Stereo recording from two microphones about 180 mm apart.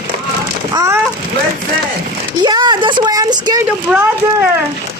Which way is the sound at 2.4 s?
25° right (ahead or behind).